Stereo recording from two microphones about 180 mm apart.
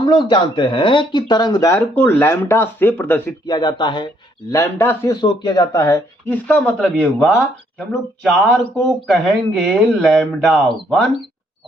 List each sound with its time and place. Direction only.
0.0 s speech: 25° left (ahead or behind)
3.4 s speech: 25° left (ahead or behind)
5.2 s speech: 25° left (ahead or behind); by 7.4 s 5° left (ahead or behind)
8.7 s speech: centre (ahead or behind)